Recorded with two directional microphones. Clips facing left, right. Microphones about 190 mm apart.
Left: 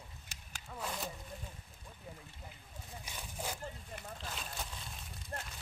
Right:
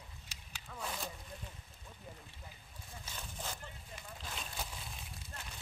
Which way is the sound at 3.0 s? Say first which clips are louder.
Left 3 dB; 10° left (ahead or behind).